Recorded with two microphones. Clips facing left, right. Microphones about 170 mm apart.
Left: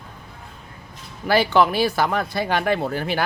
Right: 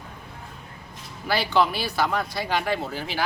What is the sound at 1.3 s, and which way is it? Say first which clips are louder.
Speech: left 5 dB; 50° left (ahead or behind).